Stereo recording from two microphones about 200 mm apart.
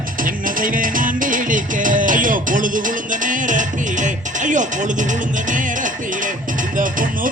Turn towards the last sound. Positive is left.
turn(degrees=-40)  # may be behind; listen again after turning